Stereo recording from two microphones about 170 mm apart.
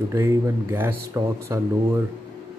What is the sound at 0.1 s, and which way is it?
Speech, 15° right (ahead or behind).